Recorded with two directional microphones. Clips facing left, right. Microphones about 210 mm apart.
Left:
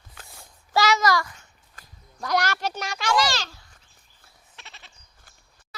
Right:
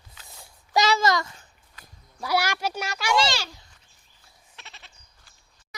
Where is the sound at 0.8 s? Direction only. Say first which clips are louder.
Left 1 dB; 30° right (ahead or behind).